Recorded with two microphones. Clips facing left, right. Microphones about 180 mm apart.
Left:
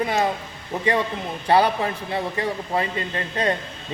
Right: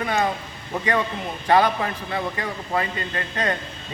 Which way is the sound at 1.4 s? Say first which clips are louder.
Even; 30° left (ahead or behind).